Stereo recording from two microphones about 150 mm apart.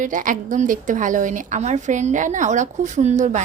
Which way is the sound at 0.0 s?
60° right (ahead or behind).